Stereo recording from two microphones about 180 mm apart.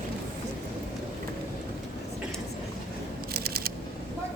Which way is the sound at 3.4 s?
55° right (ahead or behind).